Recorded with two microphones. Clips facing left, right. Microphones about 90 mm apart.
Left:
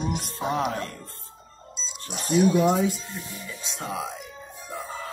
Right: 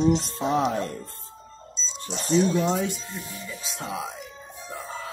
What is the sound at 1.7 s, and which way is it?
Speech, 10° left (ahead or behind).